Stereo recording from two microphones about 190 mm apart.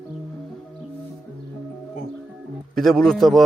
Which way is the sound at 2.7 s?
Centre (ahead or behind).